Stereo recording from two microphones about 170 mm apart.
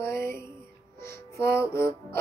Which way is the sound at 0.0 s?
15° left (ahead or behind).